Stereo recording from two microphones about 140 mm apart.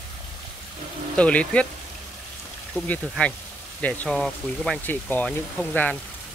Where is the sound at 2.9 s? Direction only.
10° left (ahead or behind).